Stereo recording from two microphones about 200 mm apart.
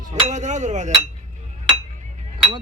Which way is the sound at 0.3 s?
35° right (ahead or behind).